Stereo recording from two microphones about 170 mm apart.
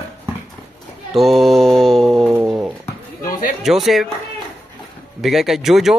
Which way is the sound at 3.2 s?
60° left (ahead or behind).